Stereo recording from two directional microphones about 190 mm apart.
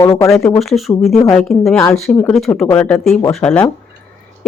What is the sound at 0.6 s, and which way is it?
Speech, centre (ahead or behind).